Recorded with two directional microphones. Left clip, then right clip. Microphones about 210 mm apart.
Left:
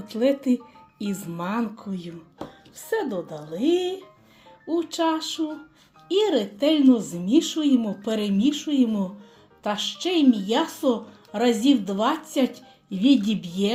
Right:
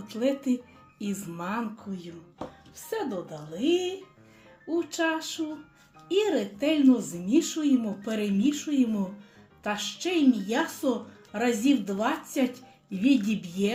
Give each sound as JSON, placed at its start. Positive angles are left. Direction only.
{"t": 0.1, "sound": "speech", "side_deg": 30}